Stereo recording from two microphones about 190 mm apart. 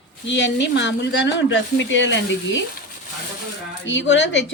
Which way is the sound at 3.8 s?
70° left (ahead or behind).